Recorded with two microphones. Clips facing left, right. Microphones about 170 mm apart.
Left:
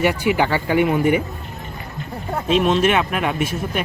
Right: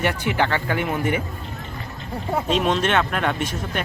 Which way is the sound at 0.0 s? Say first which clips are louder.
Left 4 dB; 10° left (ahead or behind).